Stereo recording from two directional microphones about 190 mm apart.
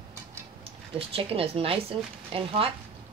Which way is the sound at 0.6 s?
30° right (ahead or behind).